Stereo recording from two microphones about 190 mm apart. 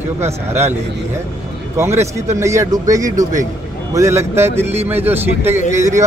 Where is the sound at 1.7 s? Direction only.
15° right (ahead or behind).